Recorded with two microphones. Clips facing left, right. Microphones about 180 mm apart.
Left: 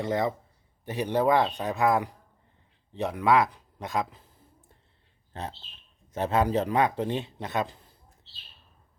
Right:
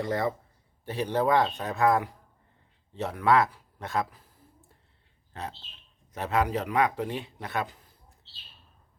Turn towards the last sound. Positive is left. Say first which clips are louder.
# left 2 dB
turn(degrees=20)  # may be behind; listen again after turning